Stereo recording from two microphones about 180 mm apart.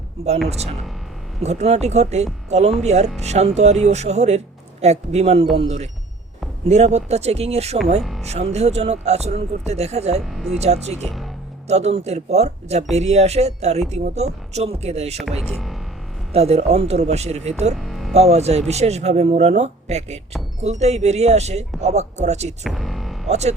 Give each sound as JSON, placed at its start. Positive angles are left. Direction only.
{"t": 0.4, "sound": "speech", "side_deg": -35}
{"t": 10.3, "sound": "speech", "side_deg": 0}
{"t": 10.6, "sound": "speech", "side_deg": -35}
{"t": 15.2, "sound": "speech", "side_deg": -5}
{"t": 16.3, "sound": "speech", "side_deg": -35}
{"t": 17.7, "sound": "music", "side_deg": 0}
{"t": 18.1, "sound": "speech", "side_deg": -35}
{"t": 22.6, "sound": "music", "side_deg": 0}
{"t": 23.3, "sound": "speech", "side_deg": -40}